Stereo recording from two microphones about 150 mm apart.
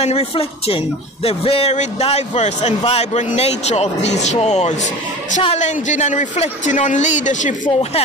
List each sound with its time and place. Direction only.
0.0 s speech: 45° left (ahead or behind)